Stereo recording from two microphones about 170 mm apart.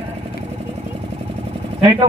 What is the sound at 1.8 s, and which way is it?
Speech, 25° right (ahead or behind).